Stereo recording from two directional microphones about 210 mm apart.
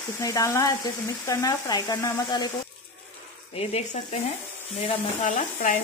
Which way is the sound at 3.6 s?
30° left (ahead or behind).